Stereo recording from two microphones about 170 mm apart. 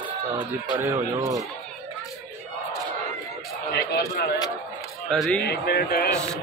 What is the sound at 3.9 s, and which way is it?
Speech, 75° left (ahead or behind).